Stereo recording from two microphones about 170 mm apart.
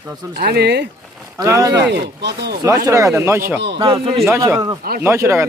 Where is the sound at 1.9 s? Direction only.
80° right.